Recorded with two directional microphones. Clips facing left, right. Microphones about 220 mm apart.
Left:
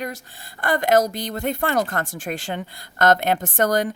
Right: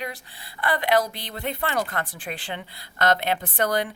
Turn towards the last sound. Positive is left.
turn(degrees=45)  # may be behind; listen again after turning